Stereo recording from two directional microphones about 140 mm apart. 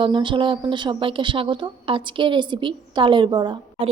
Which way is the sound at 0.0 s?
35° right (ahead or behind).